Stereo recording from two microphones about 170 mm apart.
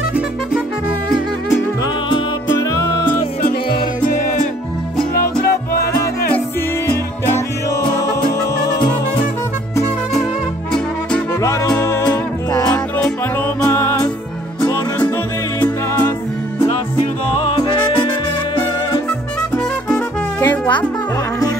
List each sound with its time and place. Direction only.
5.1 s music: 65° left (ahead or behind)
7.2 s music: 15° left (ahead or behind)
10.7 s music: 5° left (ahead or behind)
15.6 s music: 10° left (ahead or behind)
17.4 s music: 30° left (ahead or behind)
19.5 s music: 10° left (ahead or behind)